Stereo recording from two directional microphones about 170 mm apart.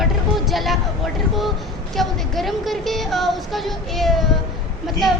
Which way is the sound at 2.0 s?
Centre (ahead or behind).